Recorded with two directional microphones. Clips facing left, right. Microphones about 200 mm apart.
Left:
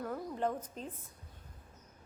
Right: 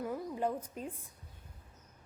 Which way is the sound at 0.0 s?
10° right (ahead or behind).